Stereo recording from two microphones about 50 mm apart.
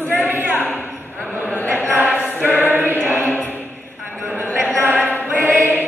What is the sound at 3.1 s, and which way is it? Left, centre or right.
Music, left.